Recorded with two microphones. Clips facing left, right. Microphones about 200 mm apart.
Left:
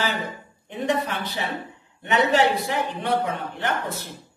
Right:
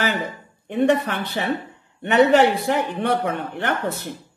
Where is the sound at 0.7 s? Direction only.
60° right (ahead or behind).